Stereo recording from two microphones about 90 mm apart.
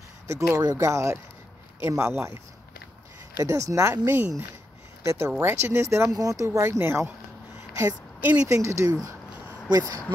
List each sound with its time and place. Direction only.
0.3 s speech: 35° right (ahead or behind)
3.9 s speech: 25° right (ahead or behind)
8.2 s speech: 20° right (ahead or behind)
8.5 s speech: 35° right (ahead or behind)